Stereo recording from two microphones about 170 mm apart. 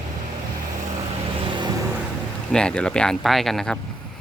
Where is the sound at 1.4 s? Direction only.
25° right (ahead or behind).